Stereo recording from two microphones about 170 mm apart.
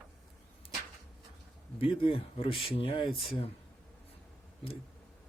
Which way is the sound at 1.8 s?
30° left (ahead or behind).